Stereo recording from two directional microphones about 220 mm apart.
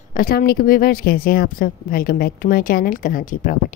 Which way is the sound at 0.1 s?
40° left (ahead or behind).